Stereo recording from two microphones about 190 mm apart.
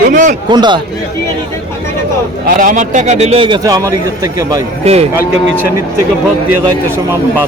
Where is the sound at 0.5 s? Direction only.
25° right (ahead or behind).